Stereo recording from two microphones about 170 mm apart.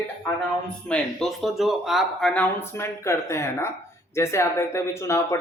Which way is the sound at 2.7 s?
15° left (ahead or behind).